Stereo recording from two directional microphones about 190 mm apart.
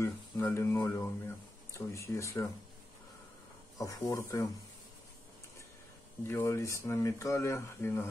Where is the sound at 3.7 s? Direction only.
20° left (ahead or behind).